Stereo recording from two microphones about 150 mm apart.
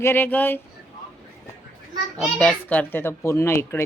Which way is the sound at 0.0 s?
15° left (ahead or behind).